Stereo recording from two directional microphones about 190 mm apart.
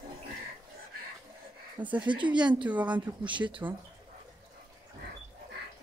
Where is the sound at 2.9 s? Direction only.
25° right (ahead or behind).